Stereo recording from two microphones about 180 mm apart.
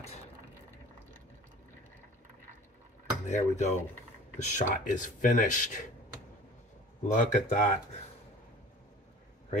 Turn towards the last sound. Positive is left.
turn(degrees=40)  # may be behind; listen again after turning